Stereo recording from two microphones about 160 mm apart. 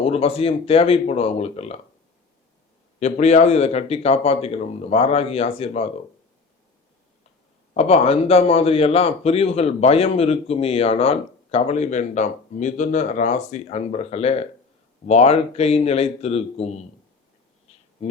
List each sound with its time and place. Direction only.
0.0 s a man's voice: 40° left (ahead or behind)
3.0 s a man's voice: 45° left (ahead or behind)
7.7 s a man's voice: 40° left (ahead or behind)